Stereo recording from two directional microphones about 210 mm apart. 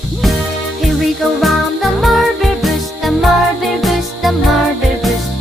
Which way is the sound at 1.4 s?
Centre (ahead or behind).